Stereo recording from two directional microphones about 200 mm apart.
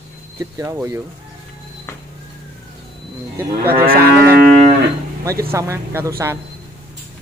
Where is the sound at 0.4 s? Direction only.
15° right (ahead or behind).